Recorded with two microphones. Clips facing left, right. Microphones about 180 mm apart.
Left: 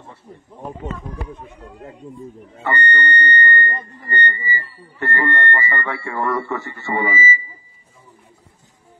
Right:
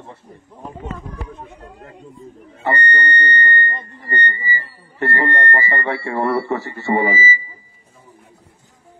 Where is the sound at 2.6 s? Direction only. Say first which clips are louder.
Right 1 dB; 35° right (ahead or behind).